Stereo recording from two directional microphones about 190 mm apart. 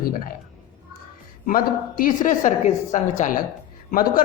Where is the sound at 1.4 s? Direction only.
45° left (ahead or behind).